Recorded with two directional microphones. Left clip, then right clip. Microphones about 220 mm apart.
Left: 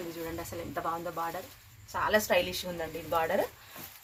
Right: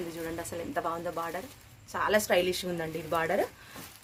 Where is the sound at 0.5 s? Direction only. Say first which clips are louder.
Right 2 dB; 50° right (ahead or behind).